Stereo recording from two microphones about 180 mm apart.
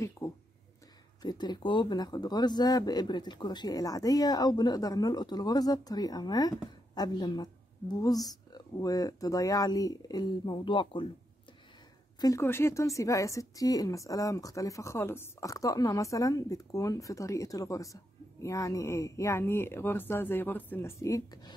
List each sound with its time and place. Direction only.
0.2 s a sound: 20° left (ahead or behind)
1.2 s speech: 25° left (ahead or behind)
12.2 s speech: 15° left (ahead or behind)